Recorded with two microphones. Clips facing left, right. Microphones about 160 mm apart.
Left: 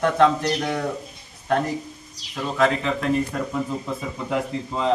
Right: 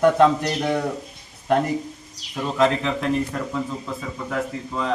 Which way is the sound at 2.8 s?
5° left (ahead or behind).